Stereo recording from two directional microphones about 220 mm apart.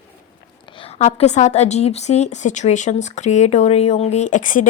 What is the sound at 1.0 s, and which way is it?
A woman's voice, 30° left (ahead or behind).